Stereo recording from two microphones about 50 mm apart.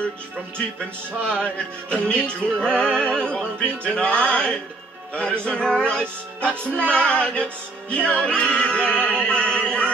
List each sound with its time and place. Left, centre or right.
1.2 s music: left